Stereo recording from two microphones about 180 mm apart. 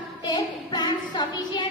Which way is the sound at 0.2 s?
25° left (ahead or behind).